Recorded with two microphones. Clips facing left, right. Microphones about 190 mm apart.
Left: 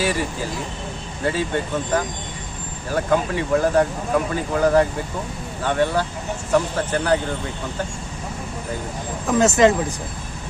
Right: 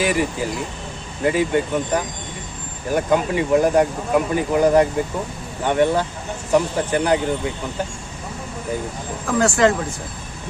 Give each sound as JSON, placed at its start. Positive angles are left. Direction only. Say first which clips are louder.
{"t": 0.0, "sound": "speech", "louder": "right 3 dB", "side_deg": -15}
{"t": 9.2, "sound": "speech", "louder": "left 1 dB", "side_deg": 20}